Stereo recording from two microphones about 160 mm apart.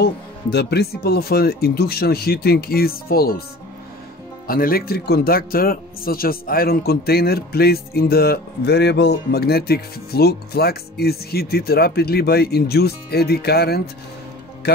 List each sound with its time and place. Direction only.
0.0 s speech: 90° left; by 3.4 s 70° left (ahead or behind)
4.5 s speech: 65° left (ahead or behind); by 13.8 s 85° left